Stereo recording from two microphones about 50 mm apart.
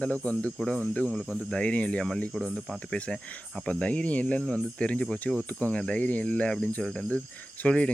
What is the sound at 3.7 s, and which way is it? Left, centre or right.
Speech, left.